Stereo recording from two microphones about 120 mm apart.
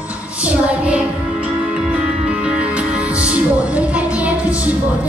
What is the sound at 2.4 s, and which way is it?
Music, 10° right (ahead or behind).